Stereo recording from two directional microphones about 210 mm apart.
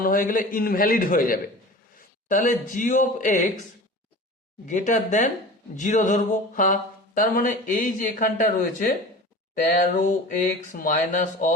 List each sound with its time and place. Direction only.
0.0 s speech: 40° left (ahead or behind)
4.6 s speech: 35° left (ahead or behind)